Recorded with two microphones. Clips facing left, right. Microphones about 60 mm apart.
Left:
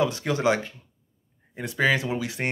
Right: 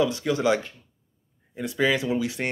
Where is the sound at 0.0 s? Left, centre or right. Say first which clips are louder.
Right 1 dB; left.